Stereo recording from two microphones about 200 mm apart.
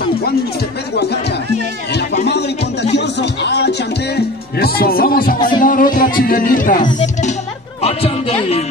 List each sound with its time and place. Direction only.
2.2 s music: 60° left (ahead or behind)
7.0 s speech: 35° left (ahead or behind)
7.8 s a sound: 30° left (ahead or behind)